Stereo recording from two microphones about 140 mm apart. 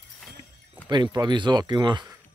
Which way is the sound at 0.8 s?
30° right (ahead or behind).